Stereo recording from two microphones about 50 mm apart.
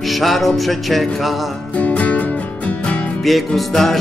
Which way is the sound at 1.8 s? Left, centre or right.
Left.